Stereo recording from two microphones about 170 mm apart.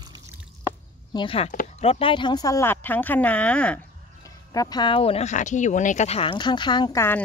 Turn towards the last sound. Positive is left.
turn(degrees=15)  # may be behind; listen again after turning